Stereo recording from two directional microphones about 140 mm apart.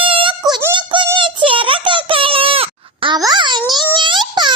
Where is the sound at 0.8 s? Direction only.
35° right (ahead or behind).